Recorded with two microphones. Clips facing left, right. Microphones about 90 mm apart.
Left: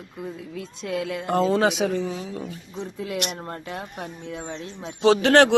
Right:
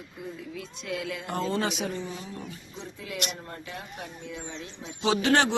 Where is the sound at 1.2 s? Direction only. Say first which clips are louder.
Left 9 dB; 90° left.